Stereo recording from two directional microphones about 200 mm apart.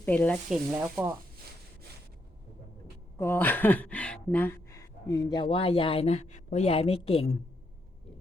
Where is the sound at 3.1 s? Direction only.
10° left (ahead or behind); by 7.3 s 30° left (ahead or behind).